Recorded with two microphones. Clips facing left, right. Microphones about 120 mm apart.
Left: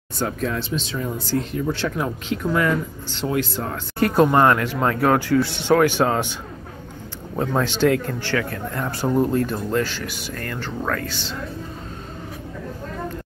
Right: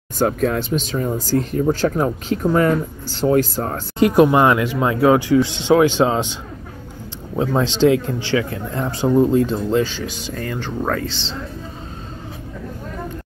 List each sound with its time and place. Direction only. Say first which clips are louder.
0.2 s speech: right 6 dB; 50° right (ahead or behind)
4.0 s speech: right 3 dB; 15° right (ahead or behind)
7.3 s speech: right 3 dB; 15° right (ahead or behind)